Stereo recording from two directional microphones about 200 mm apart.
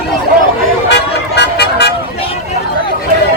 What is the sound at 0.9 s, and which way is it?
Vehicle, 55° left (ahead or behind).